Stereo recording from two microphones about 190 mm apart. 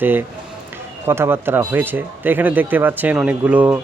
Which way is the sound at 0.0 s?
10° right (ahead or behind).